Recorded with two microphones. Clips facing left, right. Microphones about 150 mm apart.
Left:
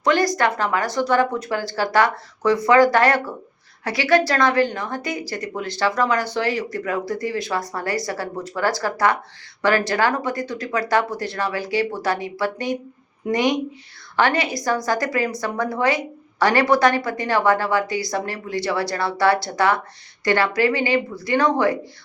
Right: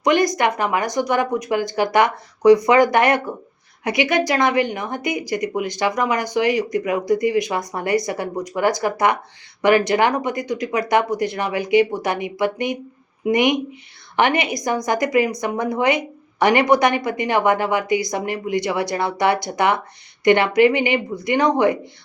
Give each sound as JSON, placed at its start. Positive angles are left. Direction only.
{"t": 0.0, "sound": "a woman's voice", "side_deg": -20}